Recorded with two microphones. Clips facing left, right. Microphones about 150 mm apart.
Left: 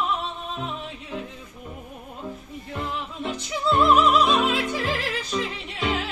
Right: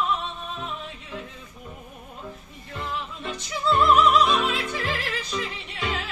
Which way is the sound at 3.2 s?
15° left (ahead or behind).